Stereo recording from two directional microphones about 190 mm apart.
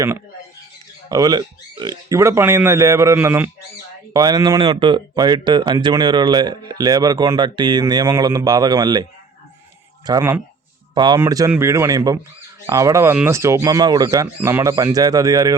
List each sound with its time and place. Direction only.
1.1 s speech: 20° right (ahead or behind)
10.1 s speech: 15° right (ahead or behind)